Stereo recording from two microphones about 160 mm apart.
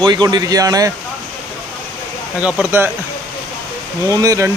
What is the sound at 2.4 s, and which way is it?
Speech, 10° right (ahead or behind).